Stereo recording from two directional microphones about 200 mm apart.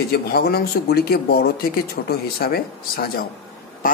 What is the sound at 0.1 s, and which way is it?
Speech, 50° left (ahead or behind).